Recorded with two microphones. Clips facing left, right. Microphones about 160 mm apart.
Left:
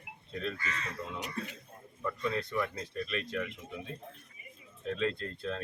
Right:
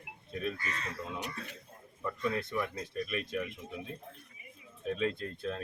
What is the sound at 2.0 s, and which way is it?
Speech, 15° right (ahead or behind).